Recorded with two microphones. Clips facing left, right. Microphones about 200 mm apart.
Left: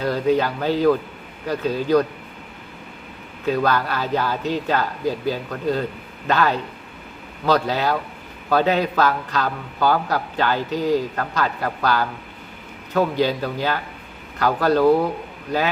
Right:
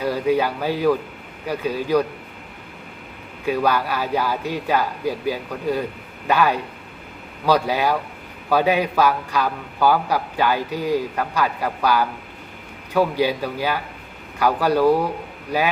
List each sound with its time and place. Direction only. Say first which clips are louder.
0.0 s a man's voice: even; 10° right (ahead or behind)
3.4 s a man's voice: even; 10° right (ahead or behind)